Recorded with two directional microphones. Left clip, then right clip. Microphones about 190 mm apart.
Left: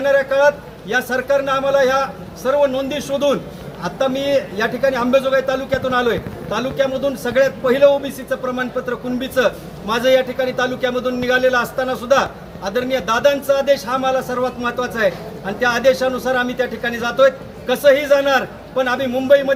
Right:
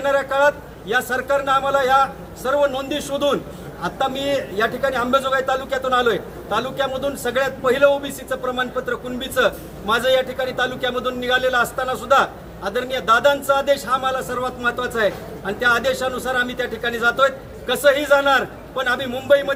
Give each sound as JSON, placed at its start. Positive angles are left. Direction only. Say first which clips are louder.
{"t": 0.0, "sound": "a man's voice", "louder": "left 3 dB", "side_deg": 0}